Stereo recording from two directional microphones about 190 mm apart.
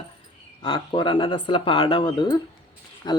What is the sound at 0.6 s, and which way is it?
Speech, 20° left (ahead or behind).